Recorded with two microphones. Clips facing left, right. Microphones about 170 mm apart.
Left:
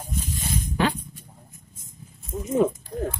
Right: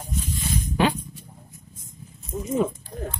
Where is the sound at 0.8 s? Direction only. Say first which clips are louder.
Right 2 dB; 15° right (ahead or behind).